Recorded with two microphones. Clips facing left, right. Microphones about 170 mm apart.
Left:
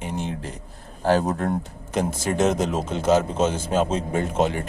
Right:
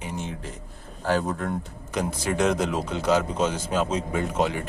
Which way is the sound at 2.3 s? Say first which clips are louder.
Left 2 dB; 20° left (ahead or behind).